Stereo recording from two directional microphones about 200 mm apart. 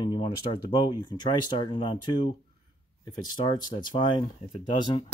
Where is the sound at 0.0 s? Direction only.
25° left (ahead or behind).